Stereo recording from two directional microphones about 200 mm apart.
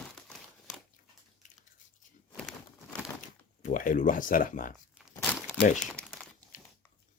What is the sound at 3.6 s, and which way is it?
Speech, 40° left (ahead or behind).